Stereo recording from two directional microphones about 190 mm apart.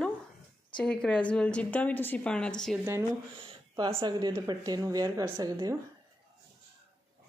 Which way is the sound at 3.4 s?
30° right (ahead or behind).